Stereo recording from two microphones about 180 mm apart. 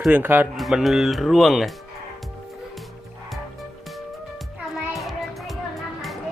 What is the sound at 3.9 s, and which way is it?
Music, centre (ahead or behind).